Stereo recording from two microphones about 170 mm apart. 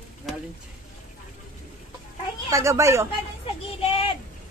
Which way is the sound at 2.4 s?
15° right (ahead or behind).